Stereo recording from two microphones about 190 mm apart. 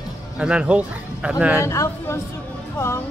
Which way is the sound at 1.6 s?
15° left (ahead or behind).